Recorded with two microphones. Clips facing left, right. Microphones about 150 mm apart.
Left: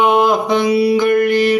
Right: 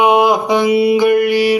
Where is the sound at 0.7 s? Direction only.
25° right (ahead or behind).